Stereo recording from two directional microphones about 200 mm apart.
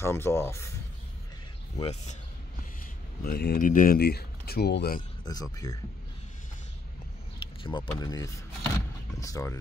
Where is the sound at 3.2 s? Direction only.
50° left (ahead or behind).